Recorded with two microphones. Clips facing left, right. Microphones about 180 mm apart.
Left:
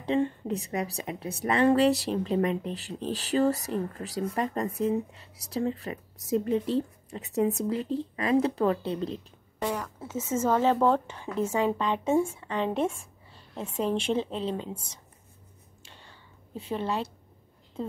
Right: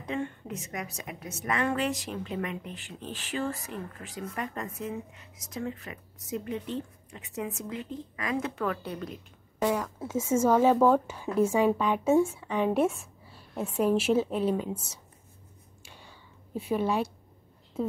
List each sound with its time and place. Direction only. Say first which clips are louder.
0.0 s a woman's voice: left 7 dB; 30° left (ahead or behind)
9.6 s a woman's voice: right 3 dB; 5° right (ahead or behind)
15.8 s a sound: right 1 dB; 10° right (ahead or behind)